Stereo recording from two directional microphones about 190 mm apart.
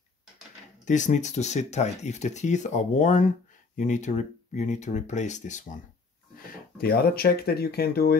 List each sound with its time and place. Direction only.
0.8 s speech: 40° left (ahead or behind)
6.8 s speech: 55° left (ahead or behind)